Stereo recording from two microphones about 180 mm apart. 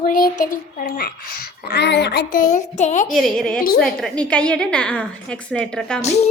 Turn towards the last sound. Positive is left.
turn(degrees=5)  # may be behind; listen again after turning